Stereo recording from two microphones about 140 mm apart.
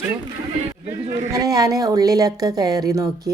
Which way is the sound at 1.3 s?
25° right (ahead or behind).